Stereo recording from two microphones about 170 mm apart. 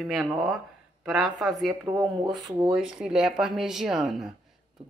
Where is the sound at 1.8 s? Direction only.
20° right (ahead or behind).